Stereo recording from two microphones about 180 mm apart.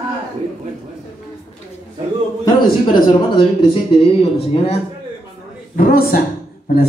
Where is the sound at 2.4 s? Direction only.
25° left (ahead or behind).